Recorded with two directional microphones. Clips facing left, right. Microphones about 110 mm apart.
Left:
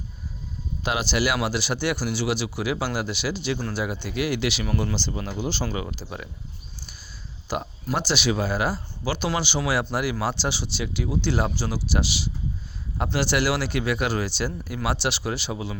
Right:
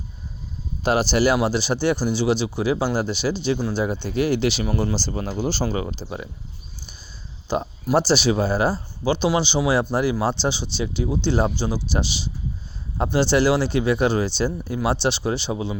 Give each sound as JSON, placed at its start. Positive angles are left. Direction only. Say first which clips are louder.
{"t": 0.8, "sound": "speech", "louder": "right 6 dB", "side_deg": -35}
{"t": 4.0, "sound": "speech", "louder": "right 5 dB", "side_deg": -30}
{"t": 4.9, "sound": "speech", "louder": "right 4 dB", "side_deg": -40}
{"t": 7.4, "sound": "a sound", "louder": "right 5 dB", "side_deg": -30}
{"t": 7.9, "sound": "speech", "louder": "right 6 dB", "side_deg": -35}